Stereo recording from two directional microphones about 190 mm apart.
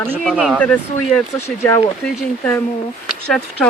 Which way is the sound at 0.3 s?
Centre (ahead or behind).